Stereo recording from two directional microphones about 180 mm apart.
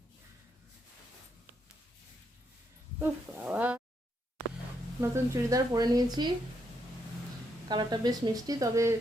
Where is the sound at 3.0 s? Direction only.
10° right (ahead or behind).